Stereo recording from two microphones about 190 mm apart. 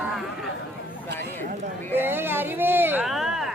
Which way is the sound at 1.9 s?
10° right (ahead or behind).